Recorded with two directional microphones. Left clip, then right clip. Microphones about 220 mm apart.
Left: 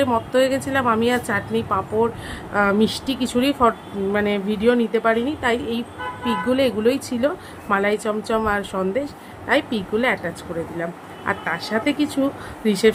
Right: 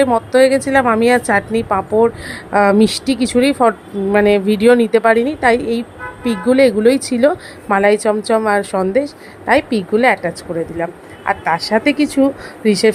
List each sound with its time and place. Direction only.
0.3 s a woman's voice: 25° right (ahead or behind)